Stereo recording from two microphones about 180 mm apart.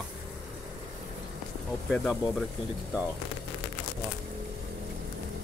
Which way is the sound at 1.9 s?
Centre (ahead or behind).